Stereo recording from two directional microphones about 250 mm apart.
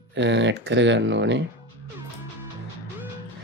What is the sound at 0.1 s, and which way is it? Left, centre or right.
Speech, right.